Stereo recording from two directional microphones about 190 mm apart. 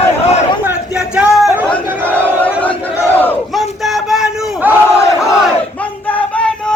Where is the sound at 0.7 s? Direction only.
5° right (ahead or behind).